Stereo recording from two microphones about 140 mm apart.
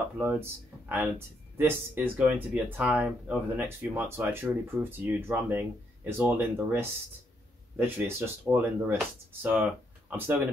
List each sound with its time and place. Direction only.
0.2 s speech: 15° right (ahead or behind)